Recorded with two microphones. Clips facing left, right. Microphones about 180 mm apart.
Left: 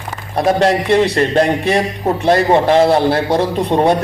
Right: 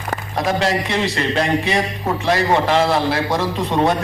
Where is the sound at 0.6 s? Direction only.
55° left (ahead or behind).